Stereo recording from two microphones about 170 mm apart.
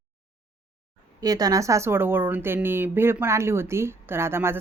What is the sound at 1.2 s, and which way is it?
Speech, 20° right (ahead or behind).